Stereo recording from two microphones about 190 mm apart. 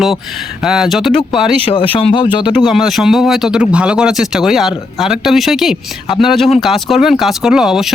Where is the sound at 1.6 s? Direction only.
25° left (ahead or behind).